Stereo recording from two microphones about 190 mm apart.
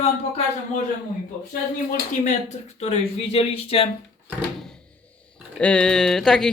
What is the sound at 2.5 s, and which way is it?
Speech, 35° left (ahead or behind).